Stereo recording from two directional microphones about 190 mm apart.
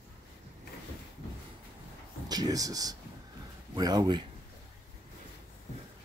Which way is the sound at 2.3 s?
20° right (ahead or behind).